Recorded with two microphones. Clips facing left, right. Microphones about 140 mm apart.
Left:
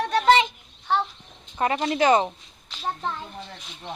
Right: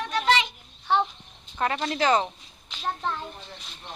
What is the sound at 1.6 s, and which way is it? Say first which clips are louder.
Speech: left 3 dB; 15° left (ahead or behind).